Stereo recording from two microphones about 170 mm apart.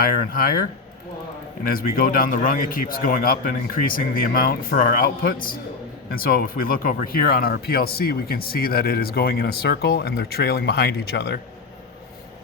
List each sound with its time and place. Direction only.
0.0 s speech: 60° left (ahead or behind)
1.7 s speech: 55° left (ahead or behind); by 11.3 s 75° left (ahead or behind)